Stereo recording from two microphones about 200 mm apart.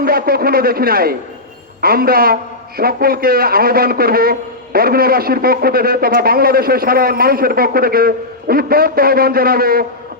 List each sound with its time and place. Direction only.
0.0 s a man's voice: 50° right (ahead or behind)